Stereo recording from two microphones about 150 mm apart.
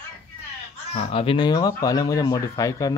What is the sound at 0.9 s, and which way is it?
Speech, 40° left (ahead or behind).